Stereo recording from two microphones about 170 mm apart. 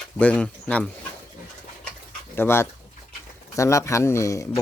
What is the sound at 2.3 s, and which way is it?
Speech, 15° left (ahead or behind).